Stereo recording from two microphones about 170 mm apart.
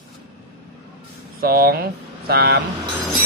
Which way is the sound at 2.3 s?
75° right (ahead or behind).